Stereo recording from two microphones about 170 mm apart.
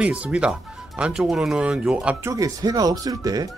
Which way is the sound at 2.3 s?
20° right (ahead or behind).